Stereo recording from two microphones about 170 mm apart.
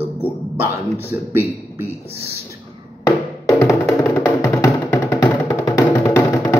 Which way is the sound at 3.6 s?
15° left (ahead or behind).